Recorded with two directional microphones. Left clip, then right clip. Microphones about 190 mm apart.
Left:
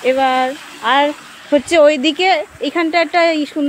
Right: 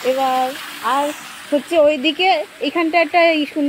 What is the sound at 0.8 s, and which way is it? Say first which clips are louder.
Speech: left 5 dB; 40° left (ahead or behind).